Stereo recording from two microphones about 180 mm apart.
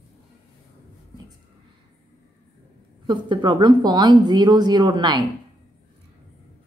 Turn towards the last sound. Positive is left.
turn(degrees=-25)  # may be behind; listen again after turning